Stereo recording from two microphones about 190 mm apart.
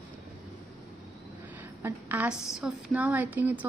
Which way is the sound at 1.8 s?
10° right (ahead or behind).